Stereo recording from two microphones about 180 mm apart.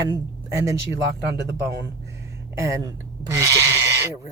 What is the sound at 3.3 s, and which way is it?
Goat, 15° right (ahead or behind).